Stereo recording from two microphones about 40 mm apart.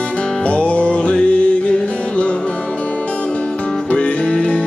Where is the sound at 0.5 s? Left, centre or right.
Left.